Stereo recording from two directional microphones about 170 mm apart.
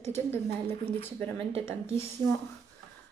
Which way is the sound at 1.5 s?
35° right (ahead or behind).